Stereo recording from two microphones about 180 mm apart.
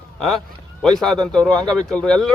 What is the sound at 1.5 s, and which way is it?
Speech, 25° right (ahead or behind).